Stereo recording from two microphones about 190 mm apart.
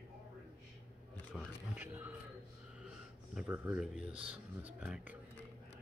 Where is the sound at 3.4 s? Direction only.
10° right (ahead or behind).